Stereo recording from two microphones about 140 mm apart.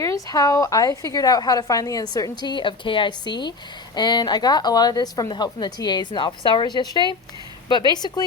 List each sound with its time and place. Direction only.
0.0 s a woman's voice: 25° left (ahead or behind)